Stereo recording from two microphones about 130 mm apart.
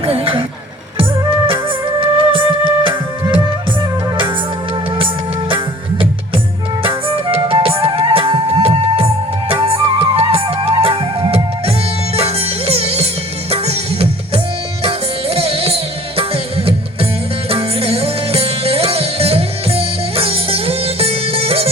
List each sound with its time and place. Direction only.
0.0 s speech: 45° right (ahead or behind)
0.9 s music: 40° right (ahead or behind)
4.9 s music: 40° right (ahead or behind)
6.8 s flute: 45° right (ahead or behind)
9.5 s music: 45° right (ahead or behind)